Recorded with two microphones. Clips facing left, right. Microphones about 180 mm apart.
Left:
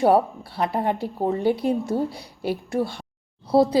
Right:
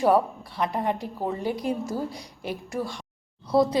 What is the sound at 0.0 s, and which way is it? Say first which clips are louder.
A woman's voice: left 3 dB; 30° left (ahead or behind).